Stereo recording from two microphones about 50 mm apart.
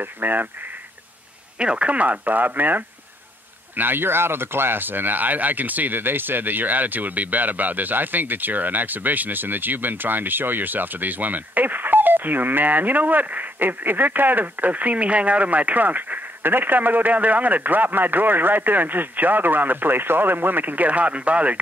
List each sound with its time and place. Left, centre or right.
0.0 s speech: right
1.6 s speech: right